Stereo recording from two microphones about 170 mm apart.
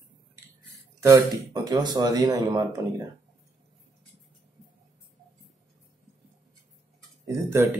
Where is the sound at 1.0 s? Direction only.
20° right (ahead or behind).